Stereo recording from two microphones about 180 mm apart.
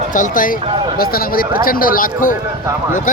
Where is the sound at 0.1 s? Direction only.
50° left (ahead or behind).